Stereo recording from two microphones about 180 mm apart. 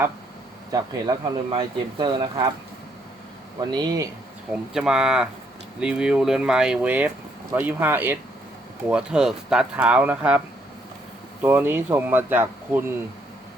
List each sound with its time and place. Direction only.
0.7 s speech: 25° right (ahead or behind)
3.6 s speech: 20° right (ahead or behind)
4.5 s speech: 5° right (ahead or behind)
11.4 s speech: 10° right (ahead or behind)